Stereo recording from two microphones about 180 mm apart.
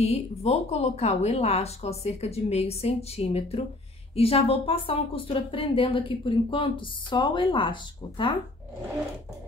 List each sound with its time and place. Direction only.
0.0 s speech: 35° left (ahead or behind)